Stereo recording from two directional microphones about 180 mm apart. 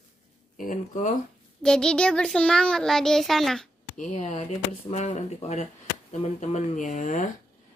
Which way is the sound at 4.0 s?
40° left (ahead or behind).